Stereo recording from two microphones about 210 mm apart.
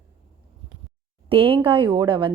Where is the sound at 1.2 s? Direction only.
25° right (ahead or behind).